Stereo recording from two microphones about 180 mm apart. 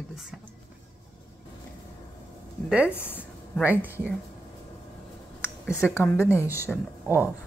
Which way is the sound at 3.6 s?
10° right (ahead or behind).